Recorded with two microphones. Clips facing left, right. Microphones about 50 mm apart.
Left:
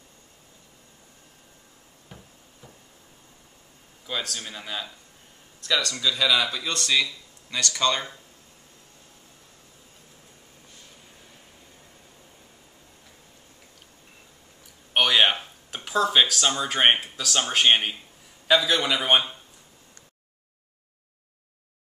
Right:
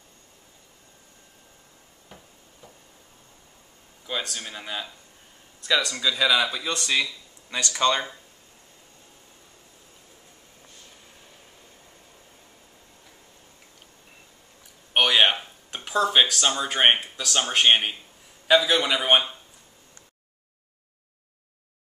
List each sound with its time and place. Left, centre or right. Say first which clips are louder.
2.0 s a sound: left 1 dB; centre
4.0 s speech: even; centre
15.0 s a man's voice: right 1 dB; centre